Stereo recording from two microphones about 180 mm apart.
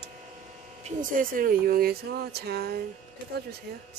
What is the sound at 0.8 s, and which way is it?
Speech, 50° right (ahead or behind).